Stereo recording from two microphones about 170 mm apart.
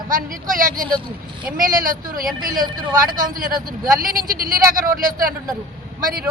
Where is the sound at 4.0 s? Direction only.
60° right (ahead or behind).